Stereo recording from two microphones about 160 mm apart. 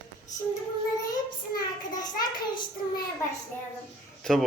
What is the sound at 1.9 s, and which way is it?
Speech, 25° left (ahead or behind).